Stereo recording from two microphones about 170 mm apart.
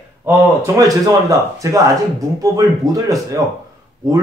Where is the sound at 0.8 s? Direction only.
20° right (ahead or behind).